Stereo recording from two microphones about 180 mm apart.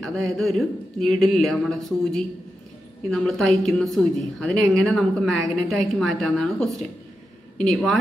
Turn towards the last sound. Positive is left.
turn(degrees=0)  # may be behind; listen again after turning